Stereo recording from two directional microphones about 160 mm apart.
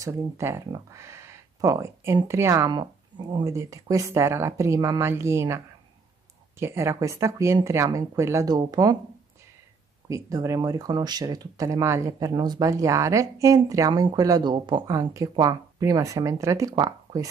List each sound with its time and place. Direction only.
0.0 s speech: 15° right (ahead or behind)
6.6 s speech: 15° right (ahead or behind)
10.0 s speech: 20° right (ahead or behind)